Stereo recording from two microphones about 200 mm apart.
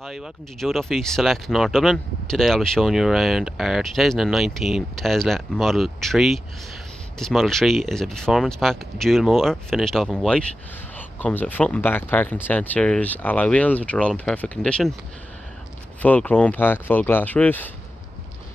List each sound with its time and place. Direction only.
0.0 s speech: centre (ahead or behind)
16.0 s speech: 10° left (ahead or behind)